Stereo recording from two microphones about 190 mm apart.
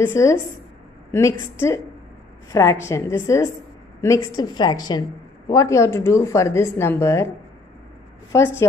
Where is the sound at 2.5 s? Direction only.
15° left (ahead or behind).